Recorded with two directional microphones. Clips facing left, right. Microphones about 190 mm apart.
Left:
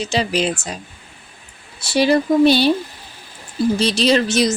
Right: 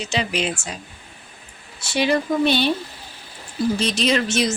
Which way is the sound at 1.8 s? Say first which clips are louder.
Left 5 dB; 35° left (ahead or behind).